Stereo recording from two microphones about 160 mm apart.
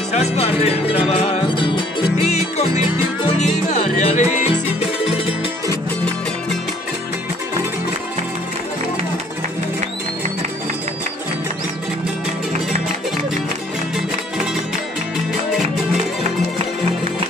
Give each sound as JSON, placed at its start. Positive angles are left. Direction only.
{"t": 0.1, "sound": "music", "side_deg": 40}
{"t": 2.3, "sound": "music", "side_deg": 45}